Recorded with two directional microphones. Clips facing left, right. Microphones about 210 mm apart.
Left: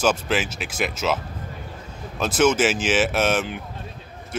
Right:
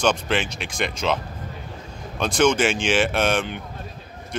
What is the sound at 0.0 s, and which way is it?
Speech, 5° left (ahead or behind).